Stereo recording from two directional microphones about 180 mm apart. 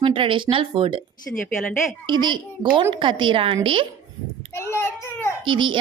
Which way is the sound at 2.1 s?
25° right (ahead or behind).